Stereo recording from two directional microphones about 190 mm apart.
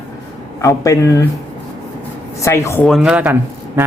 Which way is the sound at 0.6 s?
15° left (ahead or behind).